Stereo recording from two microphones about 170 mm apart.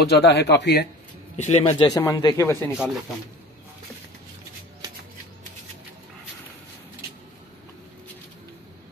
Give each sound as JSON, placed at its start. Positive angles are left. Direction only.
{"t": 0.1, "sound": "speech", "side_deg": 80}
{"t": 1.3, "sound": "a man's voice", "side_deg": 40}
{"t": 1.8, "sound": "speech", "side_deg": 20}
{"t": 2.7, "sound": "speech", "side_deg": -5}